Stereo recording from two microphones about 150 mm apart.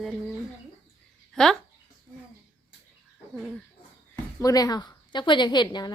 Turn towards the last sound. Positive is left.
turn(degrees=30)  # may be behind; listen again after turning